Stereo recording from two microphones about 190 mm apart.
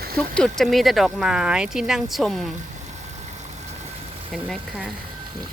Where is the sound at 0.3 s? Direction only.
5° left (ahead or behind).